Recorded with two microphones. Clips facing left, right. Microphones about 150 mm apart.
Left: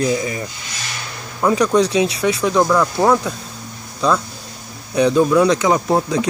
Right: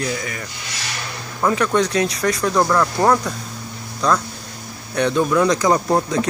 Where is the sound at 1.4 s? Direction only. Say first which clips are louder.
Left 3 dB; 10° left (ahead or behind).